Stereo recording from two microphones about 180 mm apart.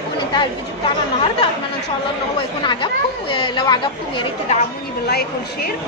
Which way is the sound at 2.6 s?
25° left (ahead or behind).